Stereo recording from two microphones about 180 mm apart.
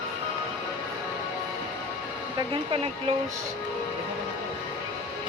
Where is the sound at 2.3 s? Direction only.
30° right (ahead or behind).